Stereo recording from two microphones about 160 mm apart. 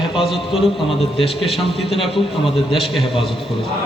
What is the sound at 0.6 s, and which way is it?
A man's voice, centre (ahead or behind).